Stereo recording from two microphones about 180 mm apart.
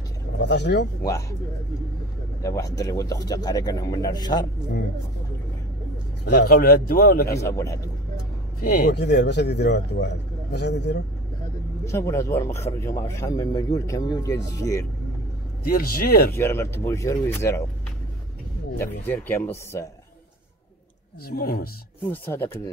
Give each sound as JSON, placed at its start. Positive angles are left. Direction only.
{"t": 0.4, "sound": "speech", "side_deg": 70}
{"t": 2.4, "sound": "speech", "side_deg": 20}
{"t": 6.3, "sound": "a man's voice", "side_deg": 60}
{"t": 7.2, "sound": "a man's voice", "side_deg": 15}
{"t": 8.5, "sound": "speech", "side_deg": 55}
{"t": 11.8, "sound": "a man's voice", "side_deg": 15}
{"t": 15.6, "sound": "a man's voice", "side_deg": 55}
{"t": 16.3, "sound": "a man's voice", "side_deg": 15}
{"t": 18.8, "sound": "a man's voice", "side_deg": 10}
{"t": 21.3, "sound": "a man's voice", "side_deg": 60}
{"t": 22.1, "sound": "a man's voice", "side_deg": 10}